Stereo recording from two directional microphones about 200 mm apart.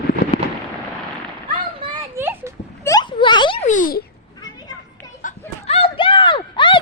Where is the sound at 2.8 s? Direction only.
20° left (ahead or behind); by 4.0 s 45° left (ahead or behind).